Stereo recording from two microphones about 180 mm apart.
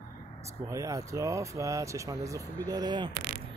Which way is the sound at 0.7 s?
20° right (ahead or behind).